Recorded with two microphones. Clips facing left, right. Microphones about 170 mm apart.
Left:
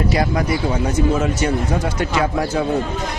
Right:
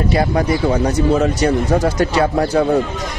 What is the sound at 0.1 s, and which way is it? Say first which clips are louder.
Speech: right 3 dB; 30° right (ahead or behind).